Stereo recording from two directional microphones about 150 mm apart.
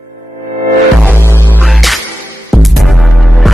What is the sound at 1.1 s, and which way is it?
Music, 15° left (ahead or behind).